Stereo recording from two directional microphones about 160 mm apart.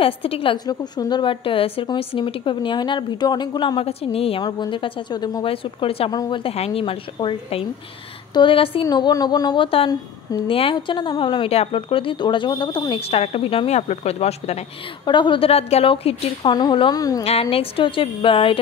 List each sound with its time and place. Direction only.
0.0 s a woman's voice: 35° left (ahead or behind)
6.1 s a woman's voice: 25° left (ahead or behind)
6.4 s a woman's voice: 40° left (ahead or behind)
8.8 s a woman's voice: 25° left (ahead or behind); by 14.6 s 40° left (ahead or behind)
15.0 s a woman's voice: 30° left (ahead or behind)
17.2 s a woman's voice: 40° left (ahead or behind)